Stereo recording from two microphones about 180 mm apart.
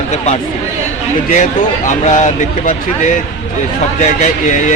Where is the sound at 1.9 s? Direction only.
40° left (ahead or behind).